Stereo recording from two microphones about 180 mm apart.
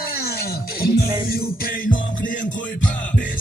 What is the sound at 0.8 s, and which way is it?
Music, 55° left (ahead or behind).